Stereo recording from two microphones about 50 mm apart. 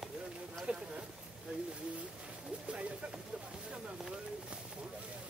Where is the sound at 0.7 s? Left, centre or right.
Centre.